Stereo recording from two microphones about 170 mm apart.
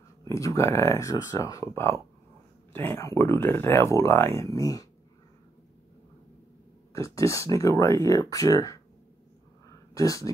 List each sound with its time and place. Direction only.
0.2 s speech: 20° left (ahead or behind)
6.9 s speech: 15° left (ahead or behind)
9.9 s speech: 20° left (ahead or behind)